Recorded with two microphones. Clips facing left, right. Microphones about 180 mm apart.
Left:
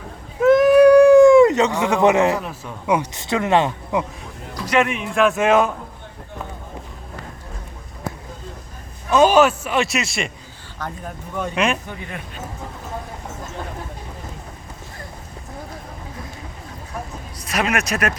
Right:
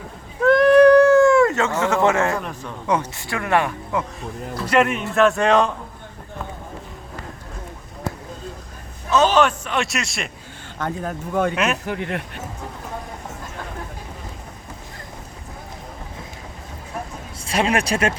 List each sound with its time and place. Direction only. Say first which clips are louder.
0.4 s cat: left 1 dB; 5° left (ahead or behind)
2.4 s speech: even; 5° left (ahead or behind)
4.7 s a man's voice: right 1 dB; 5° right (ahead or behind)
9.0 s a man's voice: left 3 dB; 10° left (ahead or behind)
10.8 s speech: right 5 dB; 55° right (ahead or behind)
11.5 s a man's voice: left 1 dB; 5° right (ahead or behind)
11.9 s speech: right 7 dB; 75° right (ahead or behind)
17.4 s speech: right 2 dB; 30° right (ahead or behind)